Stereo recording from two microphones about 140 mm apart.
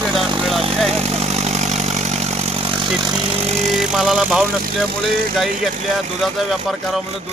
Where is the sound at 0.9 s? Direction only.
50° right (ahead or behind).